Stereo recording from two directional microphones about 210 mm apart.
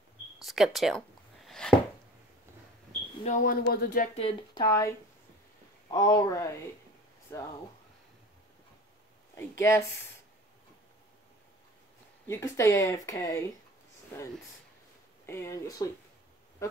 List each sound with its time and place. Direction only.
0.4 s a sound: centre (ahead or behind)
3.3 s speech: 45° left (ahead or behind)
4.1 s speech: 25° left (ahead or behind)
9.4 s speech: 10° left (ahead or behind)
12.3 s speech: 15° left (ahead or behind)
15.2 s speech: 15° left (ahead or behind)